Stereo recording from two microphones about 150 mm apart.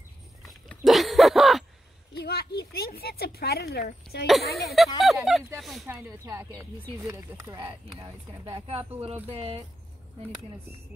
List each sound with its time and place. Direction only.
0.4 s a sound: centre (ahead or behind)
2.1 s speech: 90° left
4.3 s speech: centre (ahead or behind)
5.9 s speech: 20° right (ahead or behind)
8.6 s speech: 40° right (ahead or behind)